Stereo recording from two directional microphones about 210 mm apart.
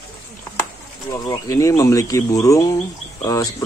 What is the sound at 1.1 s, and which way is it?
Speech, 15° left (ahead or behind).